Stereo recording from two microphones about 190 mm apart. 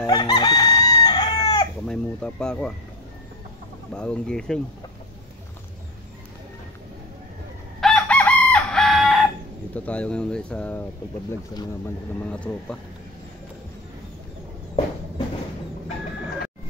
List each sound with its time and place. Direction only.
0.0 s chicken: 20° left (ahead or behind)
1.9 s speech: 5° left (ahead or behind)
3.9 s speech: 5° left (ahead or behind)
7.8 s chicken: 5° left (ahead or behind)
9.8 s speech: 5° left (ahead or behind)
12.3 s speech: 5° left (ahead or behind)